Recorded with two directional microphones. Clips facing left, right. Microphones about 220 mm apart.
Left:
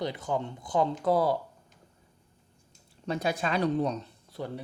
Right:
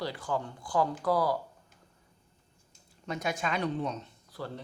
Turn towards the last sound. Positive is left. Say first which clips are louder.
# left 3 dB
turn(degrees=25)  # may be behind; listen again after turning